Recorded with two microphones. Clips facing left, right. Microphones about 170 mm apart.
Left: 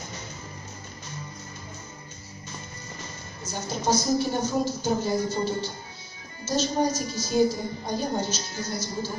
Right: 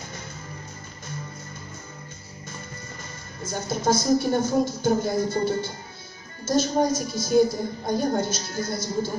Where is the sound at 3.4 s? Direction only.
55° right (ahead or behind).